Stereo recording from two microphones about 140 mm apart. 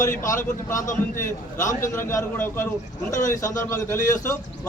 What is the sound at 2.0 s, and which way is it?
A man's voice, 20° left (ahead or behind).